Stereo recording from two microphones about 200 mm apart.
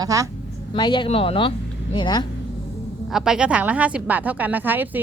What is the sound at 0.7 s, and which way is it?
Speech, 25° left (ahead or behind).